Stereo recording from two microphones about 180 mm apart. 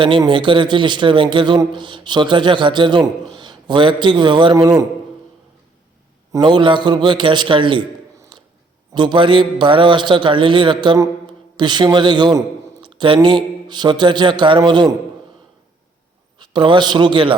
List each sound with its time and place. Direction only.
0.0 s a man's voice: 25° right (ahead or behind)
6.3 s a man's voice: 25° right (ahead or behind)
8.9 s a man's voice: 25° right (ahead or behind)
16.4 s a man's voice: 25° right (ahead or behind)